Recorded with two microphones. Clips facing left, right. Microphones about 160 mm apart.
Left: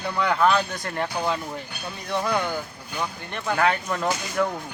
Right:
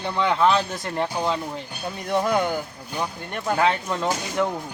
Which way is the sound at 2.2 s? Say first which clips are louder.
Right 2 dB; 20° right (ahead or behind).